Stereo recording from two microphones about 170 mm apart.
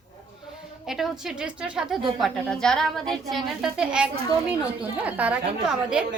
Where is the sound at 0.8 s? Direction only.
Centre (ahead or behind).